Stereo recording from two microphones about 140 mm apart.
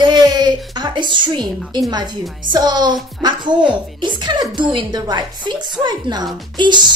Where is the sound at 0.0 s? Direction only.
30° right (ahead or behind).